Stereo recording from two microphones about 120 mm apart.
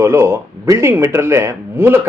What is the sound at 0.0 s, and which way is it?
Speech, 20° right (ahead or behind).